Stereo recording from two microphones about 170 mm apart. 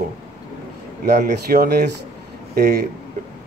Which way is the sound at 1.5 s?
65° right (ahead or behind).